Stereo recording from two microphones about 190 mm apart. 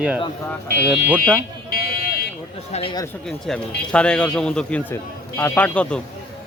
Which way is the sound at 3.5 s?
5° left (ahead or behind).